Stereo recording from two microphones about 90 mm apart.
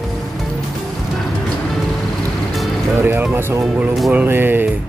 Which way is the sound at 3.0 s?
25° right (ahead or behind).